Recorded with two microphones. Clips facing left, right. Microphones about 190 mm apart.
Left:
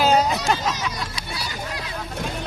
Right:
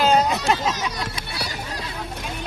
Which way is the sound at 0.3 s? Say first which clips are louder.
Right 1 dB; 55° right (ahead or behind).